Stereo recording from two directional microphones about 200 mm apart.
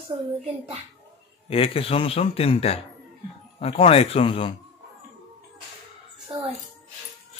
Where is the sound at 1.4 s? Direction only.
30° left (ahead or behind).